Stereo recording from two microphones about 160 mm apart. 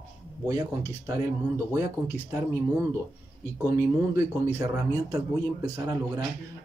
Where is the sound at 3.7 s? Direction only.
20° right (ahead or behind).